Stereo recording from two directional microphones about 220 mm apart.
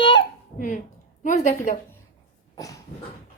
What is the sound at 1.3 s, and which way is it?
Speech, 35° left (ahead or behind).